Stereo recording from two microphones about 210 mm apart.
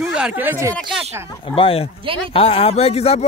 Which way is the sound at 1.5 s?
25° left (ahead or behind).